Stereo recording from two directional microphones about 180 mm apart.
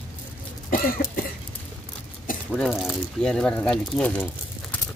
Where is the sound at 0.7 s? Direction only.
50° left (ahead or behind).